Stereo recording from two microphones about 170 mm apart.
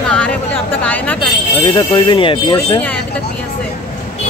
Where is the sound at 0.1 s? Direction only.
5° left (ahead or behind).